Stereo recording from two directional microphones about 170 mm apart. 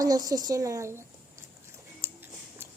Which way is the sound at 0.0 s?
20° right (ahead or behind).